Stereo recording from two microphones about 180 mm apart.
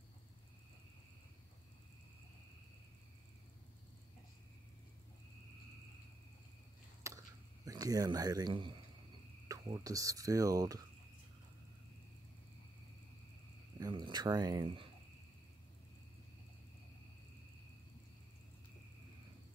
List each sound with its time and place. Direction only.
7.0 s chop: 15° right (ahead or behind)
7.6 s speech: 20° right (ahead or behind)
13.7 s speech: 20° right (ahead or behind)